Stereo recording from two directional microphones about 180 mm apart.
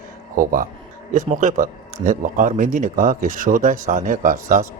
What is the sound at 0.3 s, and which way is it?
Speech, 50° right (ahead or behind).